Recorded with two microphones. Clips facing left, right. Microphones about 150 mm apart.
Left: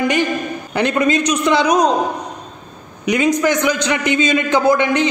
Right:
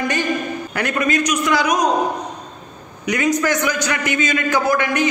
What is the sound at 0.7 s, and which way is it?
A man's voice, 25° left (ahead or behind).